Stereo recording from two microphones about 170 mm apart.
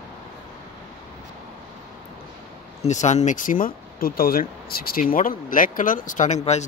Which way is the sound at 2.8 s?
45° left (ahead or behind).